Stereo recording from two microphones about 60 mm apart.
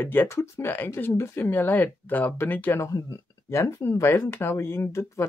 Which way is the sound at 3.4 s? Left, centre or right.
Left.